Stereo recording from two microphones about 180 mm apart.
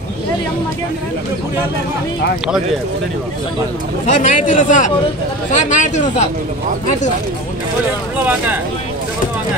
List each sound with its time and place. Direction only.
4.0 s speech: 45° left (ahead or behind)